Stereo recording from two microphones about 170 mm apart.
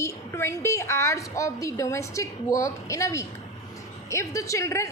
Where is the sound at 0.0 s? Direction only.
15° left (ahead or behind).